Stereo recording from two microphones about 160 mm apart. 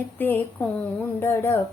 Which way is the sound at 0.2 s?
10° left (ahead or behind).